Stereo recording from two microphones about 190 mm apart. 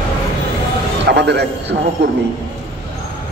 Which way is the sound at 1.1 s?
65° right (ahead or behind).